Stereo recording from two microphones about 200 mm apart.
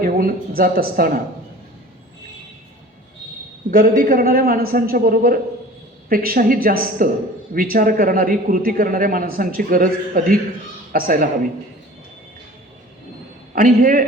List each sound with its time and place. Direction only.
0.0 s speech: 45° right (ahead or behind)
3.7 s a man's voice: 45° right (ahead or behind)
13.5 s a man's voice: 45° right (ahead or behind)